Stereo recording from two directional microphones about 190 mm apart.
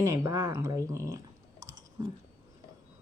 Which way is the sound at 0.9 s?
15° right (ahead or behind).